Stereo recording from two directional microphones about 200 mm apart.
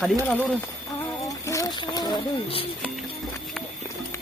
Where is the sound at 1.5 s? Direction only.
15° left (ahead or behind).